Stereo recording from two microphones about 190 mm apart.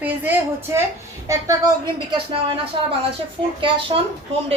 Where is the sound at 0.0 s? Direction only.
10° right (ahead or behind); by 2.4 s 25° right (ahead or behind).